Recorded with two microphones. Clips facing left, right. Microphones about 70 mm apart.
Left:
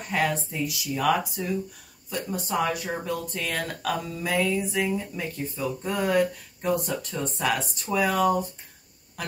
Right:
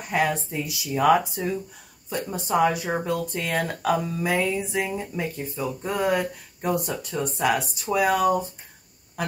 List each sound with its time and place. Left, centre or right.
0.1 s speech: centre